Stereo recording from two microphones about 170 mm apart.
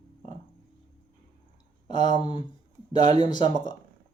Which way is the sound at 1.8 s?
25° left (ahead or behind).